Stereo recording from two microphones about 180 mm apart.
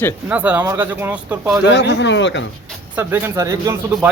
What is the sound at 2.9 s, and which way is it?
Speech, 10° right (ahead or behind).